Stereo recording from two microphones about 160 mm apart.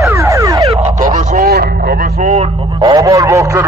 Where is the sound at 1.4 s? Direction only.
85° right.